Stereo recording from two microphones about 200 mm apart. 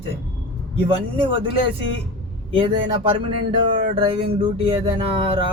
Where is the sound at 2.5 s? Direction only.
25° right (ahead or behind).